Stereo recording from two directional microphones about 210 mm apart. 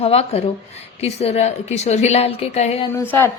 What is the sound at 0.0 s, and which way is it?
A woman's voice, 30° left (ahead or behind).